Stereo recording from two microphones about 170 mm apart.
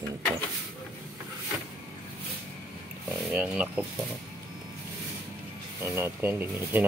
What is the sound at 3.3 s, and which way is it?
Speech, 5° right (ahead or behind).